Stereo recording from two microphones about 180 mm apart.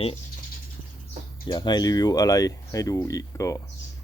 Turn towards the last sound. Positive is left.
turn(degrees=20)  # may be behind; listen again after turning